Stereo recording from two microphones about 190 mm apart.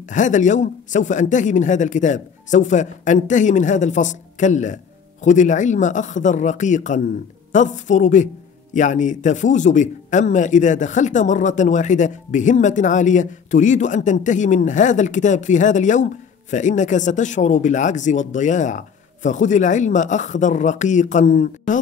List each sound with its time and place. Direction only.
0.1 s a man's voice: 40° left (ahead or behind)